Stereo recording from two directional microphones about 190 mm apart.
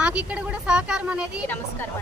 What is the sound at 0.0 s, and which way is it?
Speech, 5° right (ahead or behind).